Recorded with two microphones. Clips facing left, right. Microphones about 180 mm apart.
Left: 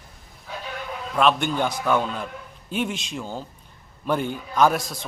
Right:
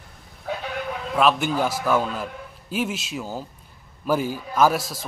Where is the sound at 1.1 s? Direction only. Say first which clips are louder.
Even; 5° right (ahead or behind).